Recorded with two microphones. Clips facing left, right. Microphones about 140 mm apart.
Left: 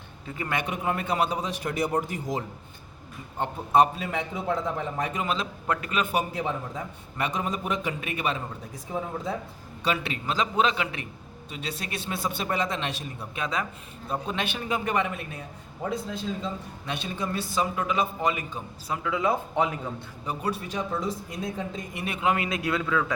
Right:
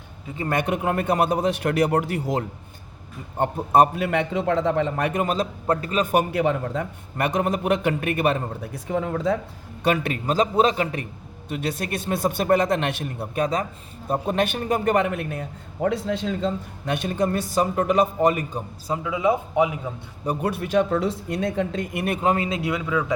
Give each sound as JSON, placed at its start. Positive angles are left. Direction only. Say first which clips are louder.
{"t": 0.3, "sound": "a man's voice", "louder": "right 6 dB", "side_deg": -40}
{"t": 0.6, "sound": "a man's voice", "louder": "right 6 dB", "side_deg": -55}
{"t": 3.3, "sound": "a man's voice", "louder": "right 4 dB", "side_deg": -50}
{"t": 5.2, "sound": "a man's voice", "louder": "right 5 dB", "side_deg": -45}
{"t": 6.1, "sound": "a man's voice", "louder": "right 7 dB", "side_deg": -60}
{"t": 9.8, "sound": "a man's voice", "louder": "right 6 dB", "side_deg": -50}
{"t": 11.4, "sound": "a man's voice", "louder": "right 8 dB", "side_deg": -55}
{"t": 16.8, "sound": "a man's voice", "louder": "right 9 dB", "side_deg": -55}
{"t": 19.0, "sound": "a man's voice", "louder": "right 4 dB", "side_deg": -15}
{"t": 20.2, "sound": "a man's voice", "louder": "right 6 dB", "side_deg": -55}
{"t": 22.0, "sound": "a man's voice", "louder": "right 3 dB", "side_deg": -45}